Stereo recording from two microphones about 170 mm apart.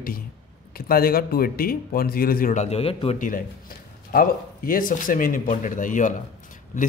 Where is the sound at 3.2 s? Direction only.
50° left (ahead or behind).